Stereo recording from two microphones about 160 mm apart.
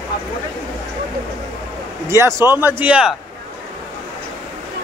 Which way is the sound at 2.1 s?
15° right (ahead or behind).